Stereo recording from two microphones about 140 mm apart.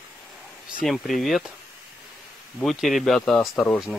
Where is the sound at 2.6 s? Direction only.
Centre (ahead or behind).